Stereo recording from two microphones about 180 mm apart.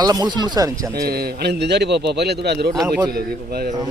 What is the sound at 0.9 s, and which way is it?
A man's voice, 60° right (ahead or behind).